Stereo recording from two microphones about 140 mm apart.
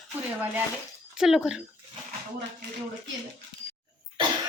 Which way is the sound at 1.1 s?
5° right (ahead or behind).